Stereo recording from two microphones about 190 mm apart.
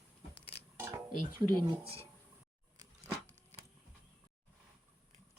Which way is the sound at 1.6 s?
30° right (ahead or behind).